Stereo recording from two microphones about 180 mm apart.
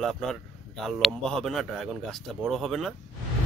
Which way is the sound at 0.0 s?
Centre (ahead or behind).